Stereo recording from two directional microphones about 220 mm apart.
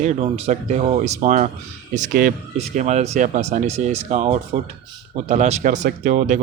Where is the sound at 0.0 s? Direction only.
30° right (ahead or behind).